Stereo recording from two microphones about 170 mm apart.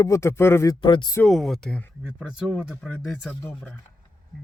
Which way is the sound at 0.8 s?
30° left (ahead or behind).